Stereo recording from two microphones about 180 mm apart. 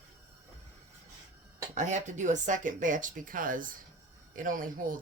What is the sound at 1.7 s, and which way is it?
Speech, 40° right (ahead or behind).